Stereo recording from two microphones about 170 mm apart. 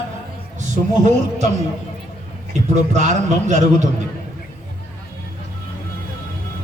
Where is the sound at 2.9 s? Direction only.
45° right (ahead or behind).